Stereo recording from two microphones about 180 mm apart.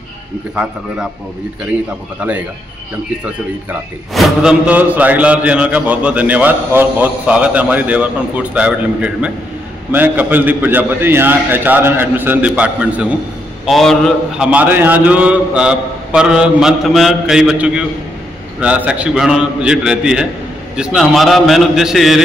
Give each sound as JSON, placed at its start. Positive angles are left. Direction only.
{"t": 2.1, "sound": "mantra", "side_deg": -10}
{"t": 4.1, "sound": "mantra", "side_deg": 0}
{"t": 13.7, "sound": "a man's voice", "side_deg": 0}
{"t": 14.5, "sound": "a man's voice", "side_deg": -10}